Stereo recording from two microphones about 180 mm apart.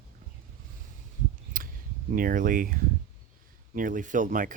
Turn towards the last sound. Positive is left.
turn(degrees=-45)  # may be behind; listen again after turning